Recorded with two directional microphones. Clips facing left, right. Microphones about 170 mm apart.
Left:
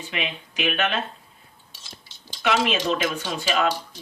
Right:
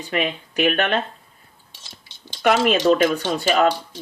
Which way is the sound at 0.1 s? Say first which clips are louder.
Right 8 dB; 45° right (ahead or behind).